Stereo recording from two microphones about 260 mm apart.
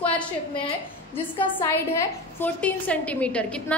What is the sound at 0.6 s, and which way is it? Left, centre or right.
A woman's voice, centre.